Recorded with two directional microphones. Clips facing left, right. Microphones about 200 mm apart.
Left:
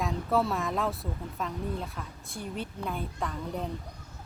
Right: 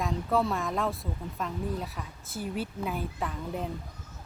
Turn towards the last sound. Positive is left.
turn(degrees=-5)  # may be behind; listen again after turning